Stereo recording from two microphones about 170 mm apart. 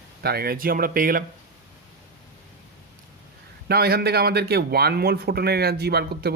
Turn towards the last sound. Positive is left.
turn(degrees=-70)  # may be behind; listen again after turning